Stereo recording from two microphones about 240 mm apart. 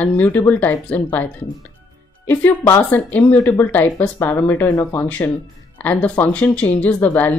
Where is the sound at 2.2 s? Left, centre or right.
Centre.